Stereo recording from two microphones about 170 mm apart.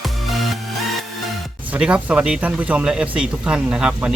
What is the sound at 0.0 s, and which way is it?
Music, centre (ahead or behind).